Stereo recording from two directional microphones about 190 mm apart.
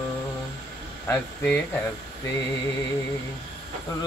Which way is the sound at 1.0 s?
10° left (ahead or behind).